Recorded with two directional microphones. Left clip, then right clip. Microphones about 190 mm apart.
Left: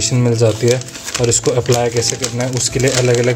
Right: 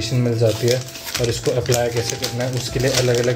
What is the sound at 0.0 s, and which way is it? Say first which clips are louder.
Speech: left 5 dB; 35° left (ahead or behind).